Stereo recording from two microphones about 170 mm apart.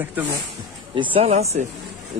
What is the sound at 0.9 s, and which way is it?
Speech, 35° right (ahead or behind).